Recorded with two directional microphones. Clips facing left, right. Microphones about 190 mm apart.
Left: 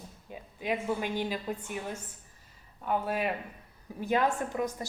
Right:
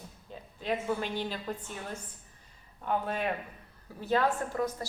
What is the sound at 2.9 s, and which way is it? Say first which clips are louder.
A woman's voice: left 1 dB; 5° left (ahead or behind).